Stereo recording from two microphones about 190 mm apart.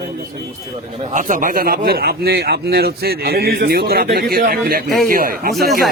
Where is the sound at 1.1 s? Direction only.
45° right (ahead or behind).